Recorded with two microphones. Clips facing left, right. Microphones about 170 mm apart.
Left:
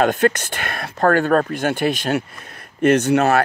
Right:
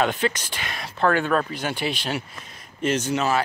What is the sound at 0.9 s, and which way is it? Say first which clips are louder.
Speech: left 5 dB; 45° left (ahead or behind).